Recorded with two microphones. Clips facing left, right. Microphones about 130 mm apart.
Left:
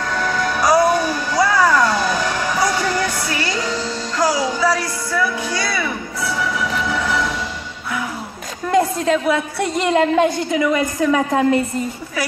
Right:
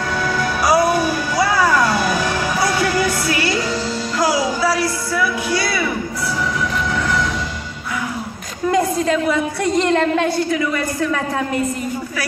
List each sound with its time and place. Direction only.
0.2 s music: 5° right (ahead or behind)
6.9 s music: 5° left (ahead or behind)
8.6 s a woman's voice: centre (ahead or behind); by 11.4 s 20° left (ahead or behind)